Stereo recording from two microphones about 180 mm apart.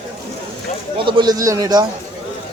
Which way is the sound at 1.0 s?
25° right (ahead or behind).